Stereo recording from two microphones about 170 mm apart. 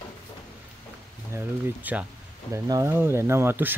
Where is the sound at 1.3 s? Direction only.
10° right (ahead or behind).